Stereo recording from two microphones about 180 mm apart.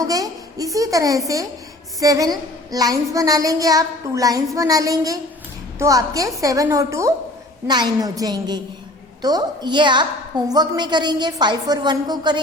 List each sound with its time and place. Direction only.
0.0 s a woman's voice: 20° right (ahead or behind)